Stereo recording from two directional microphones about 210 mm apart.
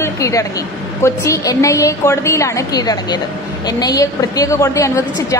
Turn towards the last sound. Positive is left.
turn(degrees=15)  # may be behind; listen again after turning